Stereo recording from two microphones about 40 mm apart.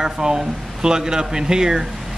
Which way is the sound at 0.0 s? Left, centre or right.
Centre.